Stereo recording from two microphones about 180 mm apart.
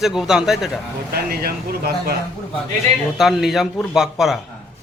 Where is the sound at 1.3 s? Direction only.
55° right (ahead or behind).